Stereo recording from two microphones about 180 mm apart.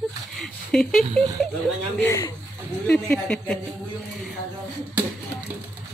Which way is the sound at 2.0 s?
15° left (ahead or behind).